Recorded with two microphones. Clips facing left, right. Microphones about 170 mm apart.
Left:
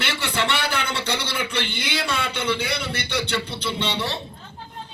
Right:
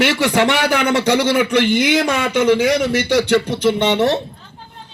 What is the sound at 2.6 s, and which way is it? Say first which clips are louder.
A man's voice: right 12 dB; 65° right (ahead or behind).